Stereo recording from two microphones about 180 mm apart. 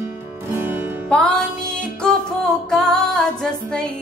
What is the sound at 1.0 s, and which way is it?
Music, 5° left (ahead or behind).